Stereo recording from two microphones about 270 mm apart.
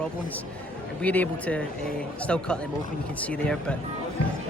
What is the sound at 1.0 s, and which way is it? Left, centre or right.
Speech, centre.